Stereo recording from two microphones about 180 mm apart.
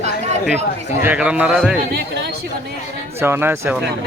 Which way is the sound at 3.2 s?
15° right (ahead or behind).